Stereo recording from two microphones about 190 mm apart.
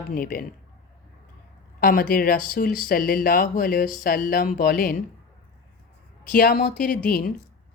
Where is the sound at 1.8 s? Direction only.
50° left (ahead or behind).